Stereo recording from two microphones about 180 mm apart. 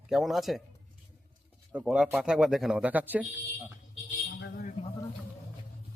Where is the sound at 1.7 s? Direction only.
5° right (ahead or behind).